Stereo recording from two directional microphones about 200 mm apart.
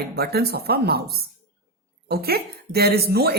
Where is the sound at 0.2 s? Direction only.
50° right (ahead or behind).